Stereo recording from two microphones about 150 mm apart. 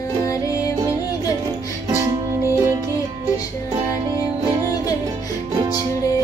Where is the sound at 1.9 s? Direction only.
15° right (ahead or behind).